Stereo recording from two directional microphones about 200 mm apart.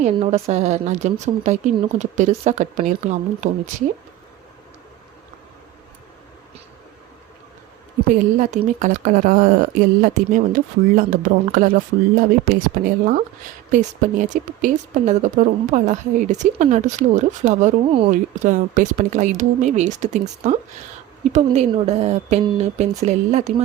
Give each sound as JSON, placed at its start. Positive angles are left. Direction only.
{"t": 0.0, "sound": "speech", "side_deg": -30}
{"t": 8.2, "sound": "speech", "side_deg": -35}
{"t": 18.1, "sound": "speech", "side_deg": -40}